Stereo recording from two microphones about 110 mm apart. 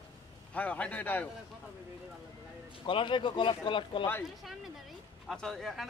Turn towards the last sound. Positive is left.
turn(degrees=0)  # may be behind; listen again after turning